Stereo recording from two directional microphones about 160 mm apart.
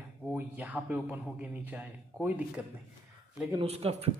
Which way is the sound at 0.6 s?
10° right (ahead or behind).